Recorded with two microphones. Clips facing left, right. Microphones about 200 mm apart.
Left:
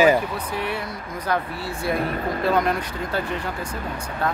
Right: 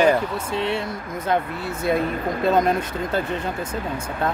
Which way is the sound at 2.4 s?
20° right (ahead or behind).